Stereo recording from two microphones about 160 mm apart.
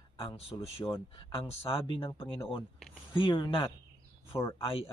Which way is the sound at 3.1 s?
30° left (ahead or behind).